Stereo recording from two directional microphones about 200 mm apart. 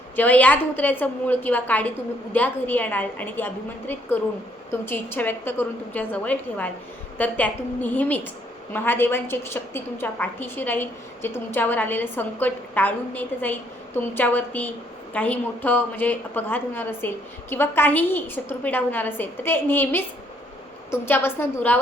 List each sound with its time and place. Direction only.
0.2 s a woman's voice: 10° left (ahead or behind)